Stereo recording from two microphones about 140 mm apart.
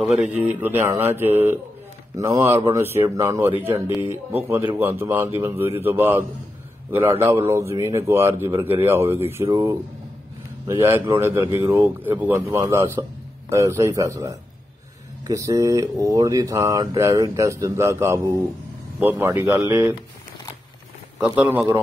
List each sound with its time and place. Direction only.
0.4 s a man's voice: 10° right (ahead or behind)
21.2 s a man's voice: 10° right (ahead or behind)